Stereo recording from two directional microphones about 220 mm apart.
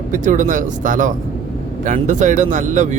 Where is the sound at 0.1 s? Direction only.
35° right (ahead or behind).